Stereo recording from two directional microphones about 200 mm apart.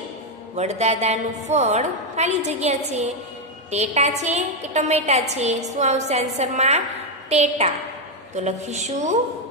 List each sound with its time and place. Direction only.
0.6 s a woman's voice: 35° right (ahead or behind)